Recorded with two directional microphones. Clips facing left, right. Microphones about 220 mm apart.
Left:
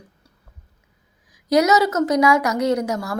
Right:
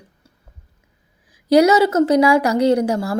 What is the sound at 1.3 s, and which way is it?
A woman's voice, 30° right (ahead or behind).